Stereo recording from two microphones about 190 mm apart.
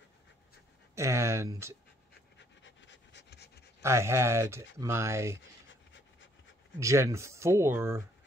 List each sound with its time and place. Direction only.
0.9 s speech: 15° right (ahead or behind)
2.3 s pant: 70° left (ahead or behind)
3.8 s speech: 15° right (ahead or behind)
6.8 s speech: 15° right (ahead or behind)